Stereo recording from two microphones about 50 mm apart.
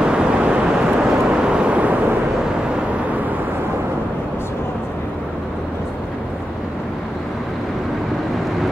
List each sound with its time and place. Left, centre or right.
0.0 s vehicle: centre